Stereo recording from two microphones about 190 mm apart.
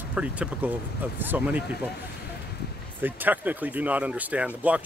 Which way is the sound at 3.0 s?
10° right (ahead or behind).